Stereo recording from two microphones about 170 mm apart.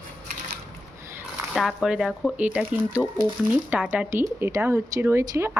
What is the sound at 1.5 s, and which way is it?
Speech, centre (ahead or behind).